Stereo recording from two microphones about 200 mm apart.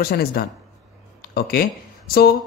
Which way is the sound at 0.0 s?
50° left (ahead or behind).